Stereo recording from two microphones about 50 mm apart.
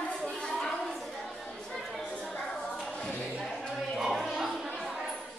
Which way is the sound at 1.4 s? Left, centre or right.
Centre.